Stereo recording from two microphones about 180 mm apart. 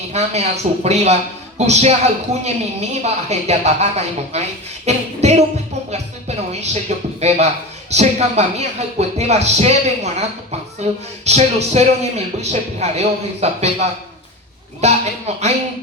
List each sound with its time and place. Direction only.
0.1 s a man's voice: 35° right (ahead or behind)
14.8 s a man's voice: 35° right (ahead or behind)